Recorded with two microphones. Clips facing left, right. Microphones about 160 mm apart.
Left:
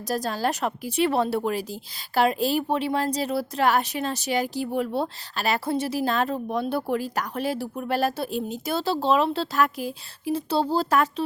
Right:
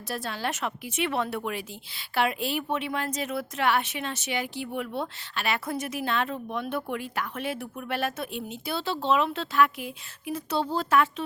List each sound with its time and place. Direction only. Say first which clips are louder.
0.1 s a woman's voice: left 6 dB; 40° left (ahead or behind)